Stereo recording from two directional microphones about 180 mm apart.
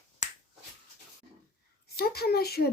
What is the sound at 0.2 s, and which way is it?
Finger snapping, 45° left (ahead or behind).